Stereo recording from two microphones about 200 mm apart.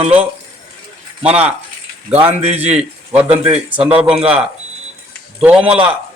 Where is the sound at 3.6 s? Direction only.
5° right (ahead or behind).